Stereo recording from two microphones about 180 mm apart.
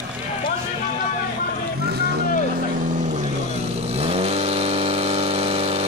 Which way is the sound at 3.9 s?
35° right (ahead or behind).